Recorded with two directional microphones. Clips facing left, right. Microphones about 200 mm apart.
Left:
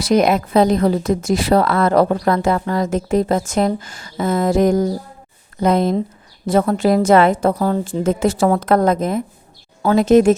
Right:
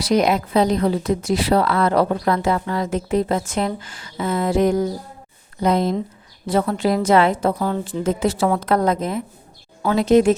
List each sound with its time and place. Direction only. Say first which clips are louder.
0.0 s a woman's voice: left 3 dB; 50° left (ahead or behind)